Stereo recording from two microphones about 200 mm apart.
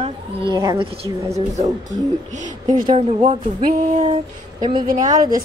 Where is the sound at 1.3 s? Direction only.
40° right (ahead or behind).